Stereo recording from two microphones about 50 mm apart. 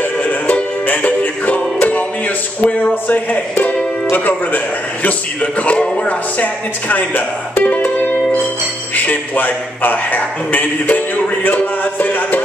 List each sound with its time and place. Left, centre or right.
0.0 s music: left
5.0 s a man's voice: left